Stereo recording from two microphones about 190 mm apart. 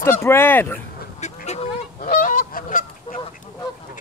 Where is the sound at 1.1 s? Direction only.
35° left (ahead or behind).